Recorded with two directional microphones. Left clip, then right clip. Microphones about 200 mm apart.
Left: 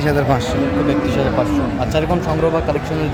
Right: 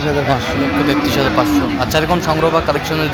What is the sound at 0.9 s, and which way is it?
Speech, 5° right (ahead or behind).